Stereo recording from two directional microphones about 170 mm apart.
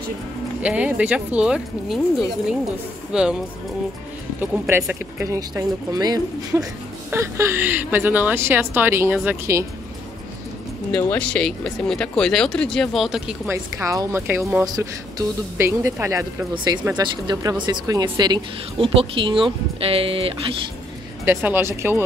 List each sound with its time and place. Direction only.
0.6 s a woman's voice: 5° right (ahead or behind)
4.4 s a woman's voice: 15° right (ahead or behind)
10.9 s speech: 5° left (ahead or behind)
13.5 s a woman's voice: 15° right (ahead or behind); by 20.3 s 35° right (ahead or behind)
21.3 s a woman's voice: 15° right (ahead or behind)